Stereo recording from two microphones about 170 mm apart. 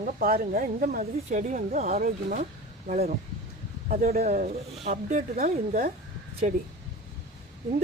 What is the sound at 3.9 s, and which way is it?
Speech, 55° right (ahead or behind).